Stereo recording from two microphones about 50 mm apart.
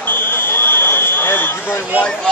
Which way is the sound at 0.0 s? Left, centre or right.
Left.